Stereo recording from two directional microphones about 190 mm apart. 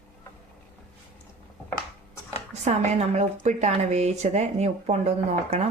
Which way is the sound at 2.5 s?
35° right (ahead or behind).